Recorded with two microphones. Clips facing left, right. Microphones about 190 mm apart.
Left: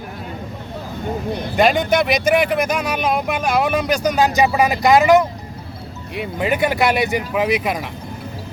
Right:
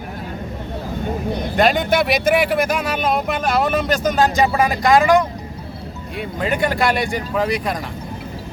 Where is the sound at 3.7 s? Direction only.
15° left (ahead or behind).